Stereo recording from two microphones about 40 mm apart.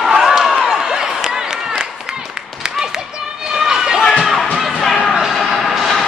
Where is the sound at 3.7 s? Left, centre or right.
Centre.